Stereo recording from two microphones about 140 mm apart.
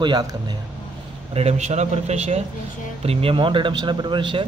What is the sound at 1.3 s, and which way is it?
A man's voice, 50° right (ahead or behind).